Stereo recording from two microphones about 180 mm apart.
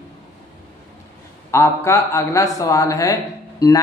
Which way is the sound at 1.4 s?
15° left (ahead or behind).